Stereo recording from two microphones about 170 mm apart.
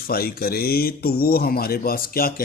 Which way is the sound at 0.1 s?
60° left (ahead or behind).